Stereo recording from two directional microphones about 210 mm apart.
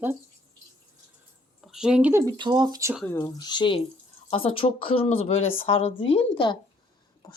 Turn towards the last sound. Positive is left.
turn(degrees=25)  # may be behind; listen again after turning